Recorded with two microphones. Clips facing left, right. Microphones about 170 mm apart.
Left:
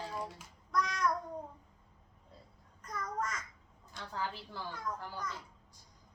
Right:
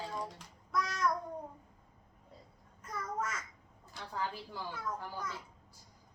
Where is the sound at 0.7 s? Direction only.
5° right (ahead or behind).